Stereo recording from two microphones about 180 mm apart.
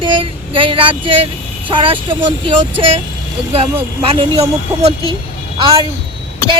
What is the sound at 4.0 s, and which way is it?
Speech, 30° right (ahead or behind).